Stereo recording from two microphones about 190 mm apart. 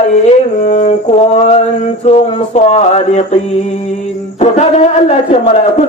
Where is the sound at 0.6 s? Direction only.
40° left (ahead or behind).